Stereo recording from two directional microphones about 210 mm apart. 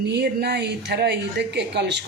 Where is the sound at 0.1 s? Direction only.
50° right (ahead or behind).